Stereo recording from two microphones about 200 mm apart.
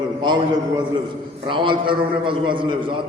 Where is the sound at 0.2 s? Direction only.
25° right (ahead or behind).